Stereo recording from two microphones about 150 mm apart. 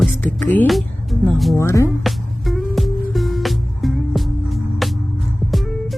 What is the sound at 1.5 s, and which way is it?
Speech, 20° left (ahead or behind).